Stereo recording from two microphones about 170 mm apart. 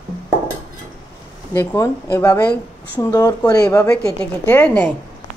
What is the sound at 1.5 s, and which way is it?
Speech, 15° left (ahead or behind).